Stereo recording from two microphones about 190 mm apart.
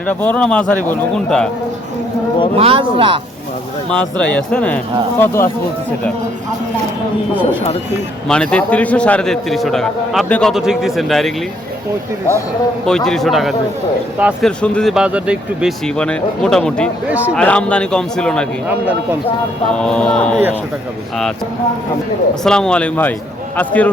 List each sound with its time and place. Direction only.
0.1 s a man's voice: 10° left (ahead or behind)
2.6 s speech: 30° right (ahead or behind)
3.8 s speech: 5° left (ahead or behind)
8.3 s a man's voice: 5° left (ahead or behind)
13.1 s a man's voice: centre (ahead or behind)
14.6 s a man's voice: 5° left (ahead or behind)
17.1 s speech: 10° right (ahead or behind)
17.3 s a man's voice: 5° left (ahead or behind)
19.7 s a man's voice: 5° left (ahead or behind)
22.4 s a man's voice: 5° left (ahead or behind)